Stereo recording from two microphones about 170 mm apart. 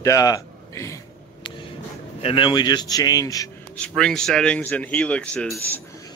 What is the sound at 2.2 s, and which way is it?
Speech, 30° left (ahead or behind).